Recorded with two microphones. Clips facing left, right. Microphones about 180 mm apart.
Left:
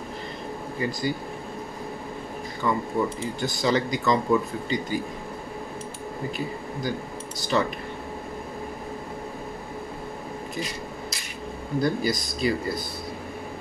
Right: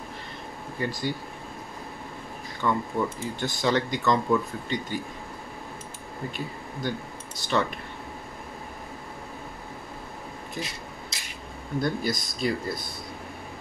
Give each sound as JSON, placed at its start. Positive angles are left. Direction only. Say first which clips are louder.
{"t": 0.7, "sound": "speech", "louder": "left 2 dB", "side_deg": 0}
{"t": 2.6, "sound": "speech", "louder": "left 1 dB", "side_deg": 5}
{"t": 6.3, "sound": "speech", "louder": "left 4 dB", "side_deg": 0}
{"t": 11.8, "sound": "speech", "louder": "left 3 dB", "side_deg": 0}